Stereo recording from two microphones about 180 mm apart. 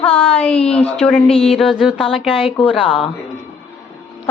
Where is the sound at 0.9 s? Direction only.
5° left (ahead or behind).